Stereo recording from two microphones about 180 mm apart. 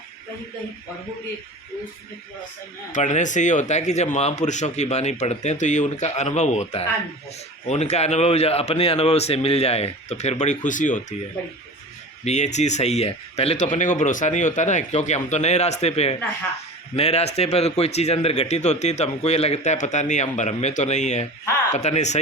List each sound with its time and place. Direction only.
2.9 s a man's voice: 40° left (ahead or behind)
12.2 s a man's voice: 40° left (ahead or behind)